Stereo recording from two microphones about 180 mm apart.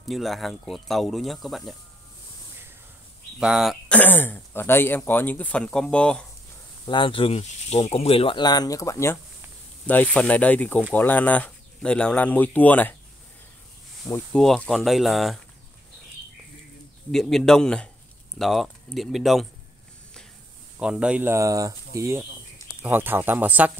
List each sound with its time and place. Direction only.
0.0 s speech: centre (ahead or behind)
3.3 s speech: 5° right (ahead or behind)
4.0 s speech: 10° left (ahead or behind)
6.9 s speech: 30° left (ahead or behind); by 12.9 s 10° left (ahead or behind)
14.3 s speech: 5° left (ahead or behind)
17.1 s speech: centre (ahead or behind)
20.8 s speech: 5° right (ahead or behind)